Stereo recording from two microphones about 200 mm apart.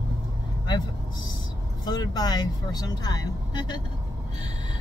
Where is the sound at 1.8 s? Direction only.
20° left (ahead or behind).